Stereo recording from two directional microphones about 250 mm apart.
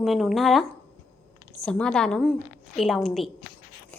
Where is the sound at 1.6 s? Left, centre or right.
Centre.